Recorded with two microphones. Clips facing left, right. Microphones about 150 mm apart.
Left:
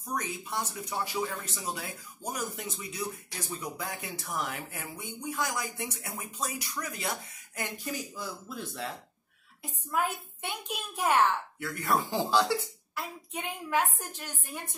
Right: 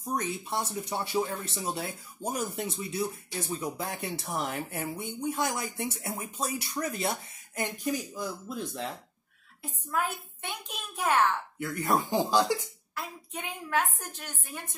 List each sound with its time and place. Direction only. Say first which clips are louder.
0.0 s speech: right 3 dB; 30° right (ahead or behind)
9.8 s a woman's voice: left 1 dB; 10° left (ahead or behind)
11.6 s speech: right 2 dB; 20° right (ahead or behind)
12.9 s a woman's voice: left 1 dB; 10° left (ahead or behind)